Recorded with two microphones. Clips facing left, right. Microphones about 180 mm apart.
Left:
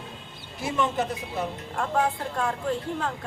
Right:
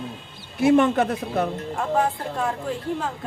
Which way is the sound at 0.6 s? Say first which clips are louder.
Right 10 dB; 60° right (ahead or behind).